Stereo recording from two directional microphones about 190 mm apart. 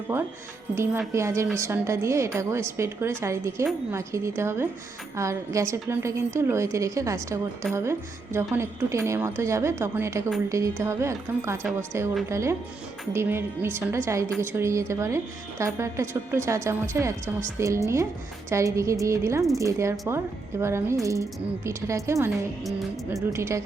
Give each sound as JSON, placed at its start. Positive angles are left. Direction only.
{"t": 0.8, "sound": "a woman's voice", "side_deg": -15}
{"t": 23.3, "sound": "a woman's voice", "side_deg": -15}